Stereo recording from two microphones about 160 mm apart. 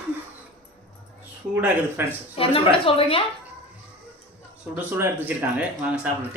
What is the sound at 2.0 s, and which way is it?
Speech, 15° right (ahead or behind).